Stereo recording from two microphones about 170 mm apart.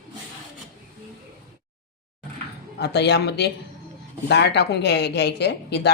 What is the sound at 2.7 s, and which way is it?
Speech, 80° left.